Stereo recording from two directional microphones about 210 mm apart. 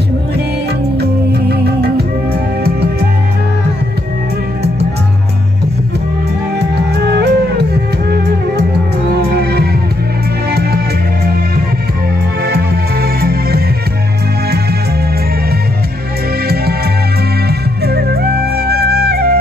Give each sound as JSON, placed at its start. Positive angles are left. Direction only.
{"t": 1.5, "sound": "music", "side_deg": -50}
{"t": 6.6, "sound": "music", "side_deg": -50}
{"t": 9.3, "sound": "music", "side_deg": -50}
{"t": 12.4, "sound": "music", "side_deg": -50}
{"t": 17.5, "sound": "music", "side_deg": -50}